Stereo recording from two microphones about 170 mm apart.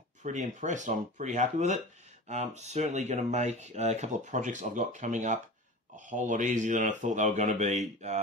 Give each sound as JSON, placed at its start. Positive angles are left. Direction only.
{"t": 0.2, "sound": "speech", "side_deg": -45}